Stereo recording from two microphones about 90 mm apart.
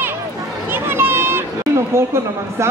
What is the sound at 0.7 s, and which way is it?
Chatter, 25° right (ahead or behind).